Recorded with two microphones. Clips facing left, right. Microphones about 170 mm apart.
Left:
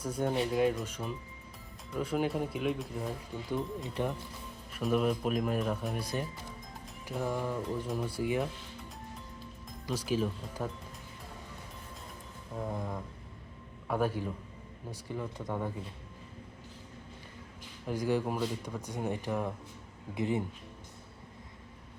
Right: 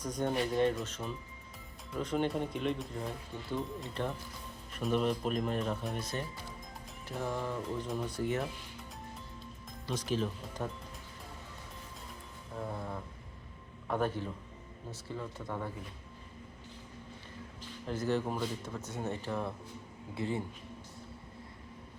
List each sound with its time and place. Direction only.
0.0 s speech: 5° left (ahead or behind)
3.8 s speech: 15° left (ahead or behind)
9.8 s speech: 10° left (ahead or behind)
12.5 s speech: 15° left (ahead or behind)
17.8 s speech: 10° left (ahead or behind)